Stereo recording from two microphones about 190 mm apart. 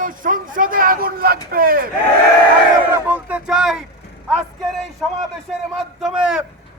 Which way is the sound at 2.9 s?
10° right (ahead or behind).